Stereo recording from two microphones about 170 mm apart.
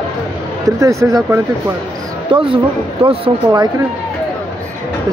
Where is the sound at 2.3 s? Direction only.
30° right (ahead or behind).